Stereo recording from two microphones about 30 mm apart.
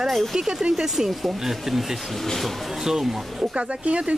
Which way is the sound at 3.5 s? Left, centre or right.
Right.